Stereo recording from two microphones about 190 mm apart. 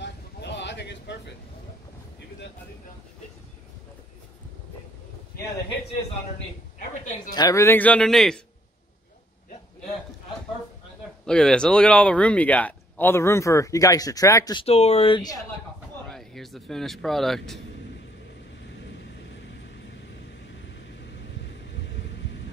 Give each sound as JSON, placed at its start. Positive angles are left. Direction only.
{"t": 0.0, "sound": "a sound", "side_deg": 65}
{"t": 7.3, "sound": "speech", "side_deg": 15}
{"t": 11.2, "sound": "speech", "side_deg": 5}
{"t": 16.1, "sound": "speech", "side_deg": 0}
{"t": 18.8, "sound": "vehicle", "side_deg": 65}